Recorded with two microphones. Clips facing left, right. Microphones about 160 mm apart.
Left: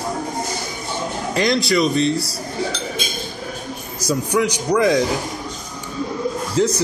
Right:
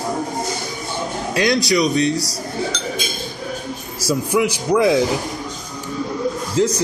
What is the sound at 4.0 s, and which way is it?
A man's voice, 5° right (ahead or behind).